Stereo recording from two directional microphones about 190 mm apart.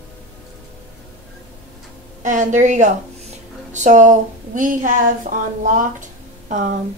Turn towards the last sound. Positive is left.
turn(degrees=-40)  # may be behind; listen again after turning